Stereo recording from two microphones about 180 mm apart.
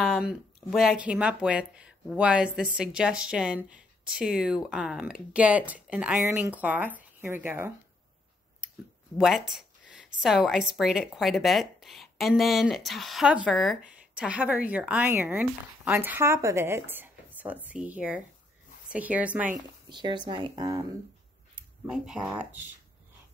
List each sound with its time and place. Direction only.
0.2 s speech: centre (ahead or behind)
9.2 s speech: centre (ahead or behind)
19.9 s speech: 25° right (ahead or behind)
21.5 s speech: 5° right (ahead or behind)